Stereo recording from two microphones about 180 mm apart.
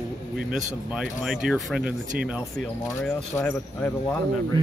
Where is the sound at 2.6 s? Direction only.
10° left (ahead or behind).